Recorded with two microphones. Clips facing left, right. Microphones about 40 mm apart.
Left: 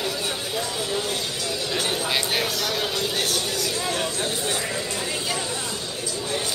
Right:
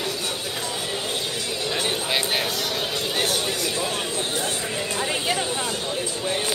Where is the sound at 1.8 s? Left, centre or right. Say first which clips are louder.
Even; centre.